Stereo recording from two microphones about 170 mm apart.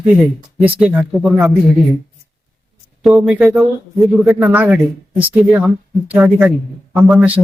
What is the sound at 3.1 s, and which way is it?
Speech, 5° right (ahead or behind).